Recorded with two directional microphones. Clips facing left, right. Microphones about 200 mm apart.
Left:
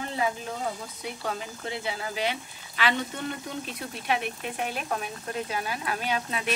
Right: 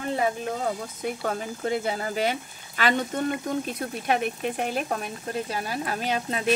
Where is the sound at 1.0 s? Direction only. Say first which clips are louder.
Right 5 dB; 50° right (ahead or behind).